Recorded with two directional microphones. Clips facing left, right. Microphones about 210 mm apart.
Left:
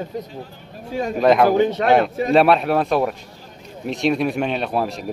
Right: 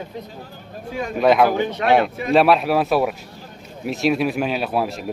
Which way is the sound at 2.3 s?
Centre (ahead or behind).